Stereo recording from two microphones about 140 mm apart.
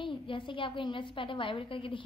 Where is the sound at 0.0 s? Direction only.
35° left (ahead or behind).